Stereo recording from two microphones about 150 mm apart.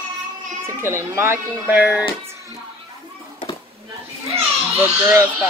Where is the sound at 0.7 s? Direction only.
15° right (ahead or behind).